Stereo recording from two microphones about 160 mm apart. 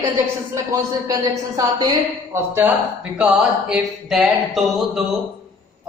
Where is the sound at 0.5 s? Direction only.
20° right (ahead or behind).